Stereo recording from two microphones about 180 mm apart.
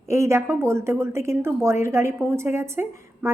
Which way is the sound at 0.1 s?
15° right (ahead or behind).